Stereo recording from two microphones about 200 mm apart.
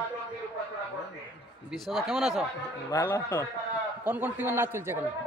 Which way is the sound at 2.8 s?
15° left (ahead or behind).